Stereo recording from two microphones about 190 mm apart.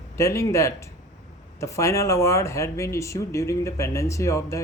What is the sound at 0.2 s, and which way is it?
Speech, 15° left (ahead or behind).